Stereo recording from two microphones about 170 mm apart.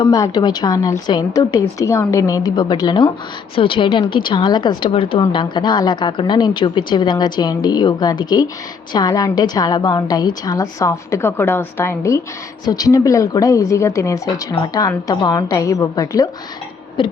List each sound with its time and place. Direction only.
0.0 s a woman's voice: 25° left (ahead or behind)